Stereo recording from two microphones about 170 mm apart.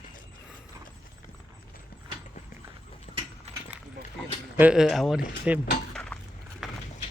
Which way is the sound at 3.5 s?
40° right (ahead or behind).